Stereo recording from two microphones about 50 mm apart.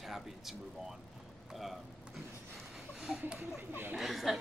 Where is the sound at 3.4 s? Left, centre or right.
Right.